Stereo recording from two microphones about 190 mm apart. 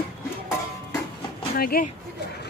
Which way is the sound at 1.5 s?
50° left (ahead or behind).